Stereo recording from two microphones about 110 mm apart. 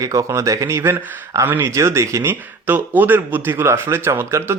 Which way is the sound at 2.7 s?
15° right (ahead or behind).